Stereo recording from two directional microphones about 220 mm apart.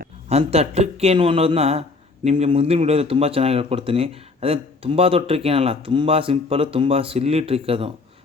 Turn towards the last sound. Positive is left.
turn(degrees=-25)  # may be behind; listen again after turning